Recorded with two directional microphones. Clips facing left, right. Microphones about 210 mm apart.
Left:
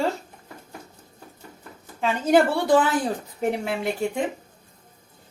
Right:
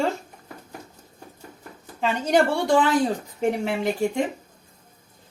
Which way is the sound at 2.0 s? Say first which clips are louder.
Left 2 dB; 5° left (ahead or behind).